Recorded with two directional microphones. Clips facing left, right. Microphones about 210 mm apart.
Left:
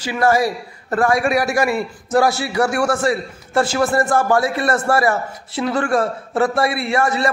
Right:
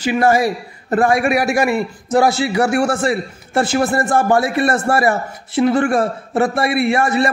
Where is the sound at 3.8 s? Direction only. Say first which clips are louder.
Right 1 dB; 25° right (ahead or behind).